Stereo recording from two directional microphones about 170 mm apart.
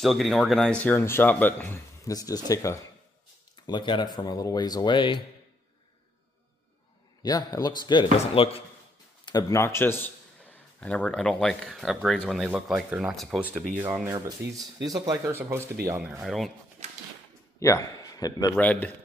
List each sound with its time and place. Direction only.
0.0 s speech: centre (ahead or behind); by 5.2 s 30° left (ahead or behind)
7.2 s speech: 20° left (ahead or behind)
9.2 s speech: 20° left (ahead or behind); by 15.7 s 15° right (ahead or behind)
16.2 s speech: centre (ahead or behind)
17.6 s a man's voice: 20° left (ahead or behind)
18.6 s speech: 10° left (ahead or behind)